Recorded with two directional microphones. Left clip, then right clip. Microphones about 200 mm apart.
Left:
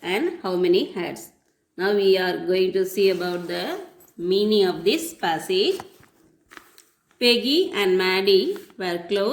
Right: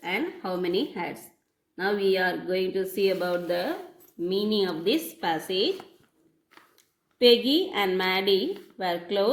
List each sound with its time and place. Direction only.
0.0 s speech: 35° left (ahead or behind)